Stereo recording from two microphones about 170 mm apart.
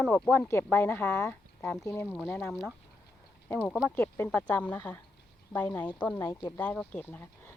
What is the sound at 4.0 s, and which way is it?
Speech, 15° left (ahead or behind).